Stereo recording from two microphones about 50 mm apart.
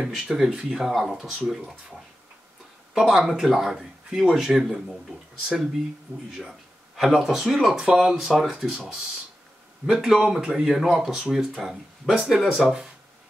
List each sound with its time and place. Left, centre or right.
0.0 s speech: centre
0.8 s speech: centre
2.9 s speech: centre
6.1 s speech: right
7.0 s speech: centre